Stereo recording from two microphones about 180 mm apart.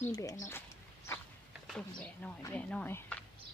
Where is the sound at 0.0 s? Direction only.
20° left (ahead or behind).